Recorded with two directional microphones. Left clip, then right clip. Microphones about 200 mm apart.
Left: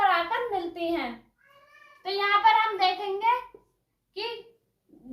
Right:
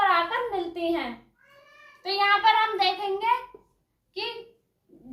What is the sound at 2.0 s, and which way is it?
A woman's voice, 15° right (ahead or behind).